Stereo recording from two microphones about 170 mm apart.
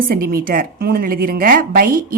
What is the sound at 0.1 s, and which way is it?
A woman's voice, 60° right (ahead or behind).